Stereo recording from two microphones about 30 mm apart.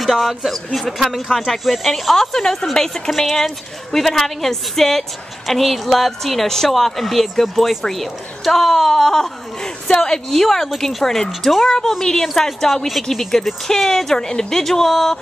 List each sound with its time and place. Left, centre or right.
0.0 s speech: centre
0.7 s a woman's voice: centre